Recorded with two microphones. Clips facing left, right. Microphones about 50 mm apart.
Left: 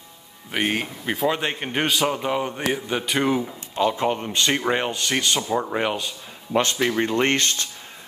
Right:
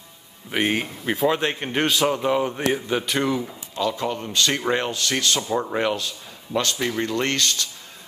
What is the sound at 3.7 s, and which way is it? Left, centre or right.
Speech, left.